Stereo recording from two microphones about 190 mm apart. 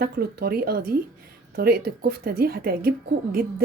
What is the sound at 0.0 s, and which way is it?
A woman's voice, 55° right (ahead or behind).